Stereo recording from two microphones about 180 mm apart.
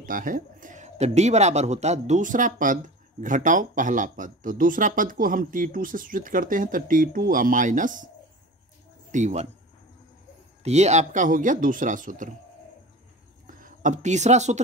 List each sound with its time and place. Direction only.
0.0 s speech: 50° right (ahead or behind)
9.1 s speech: 40° right (ahead or behind)
10.6 s speech: 40° right (ahead or behind)
13.6 s speech: 40° right (ahead or behind)